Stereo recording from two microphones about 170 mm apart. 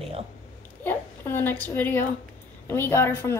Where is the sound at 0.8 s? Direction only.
10° left (ahead or behind).